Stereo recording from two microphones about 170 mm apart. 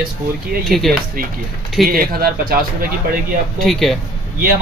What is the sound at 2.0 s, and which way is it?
Speech, 60° right (ahead or behind).